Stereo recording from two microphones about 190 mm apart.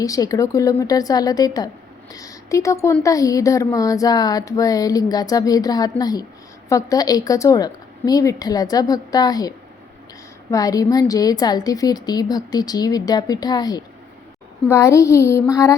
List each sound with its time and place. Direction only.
0.0 s a child's voice: 20° left (ahead or behind)